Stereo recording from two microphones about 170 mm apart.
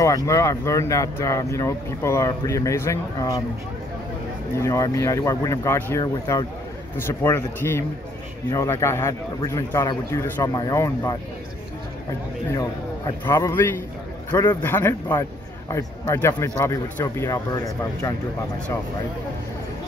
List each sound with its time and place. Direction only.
0.0 s speech: 20° left (ahead or behind)
4.6 s a man's voice: 20° left (ahead or behind)
12.5 s a man's voice: 20° left (ahead or behind)
14.6 s speech: 15° left (ahead or behind)